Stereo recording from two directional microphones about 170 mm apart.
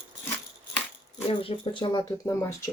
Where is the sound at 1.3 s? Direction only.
30° left (ahead or behind).